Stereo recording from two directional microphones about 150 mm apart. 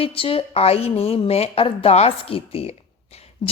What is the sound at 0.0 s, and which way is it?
A woman's voice, 35° left (ahead or behind).